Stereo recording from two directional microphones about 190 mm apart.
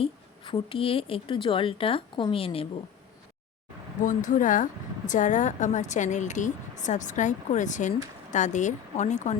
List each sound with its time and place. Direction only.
0.0 s a woman's voice: 30° left (ahead or behind)
4.0 s speech: 40° left (ahead or behind)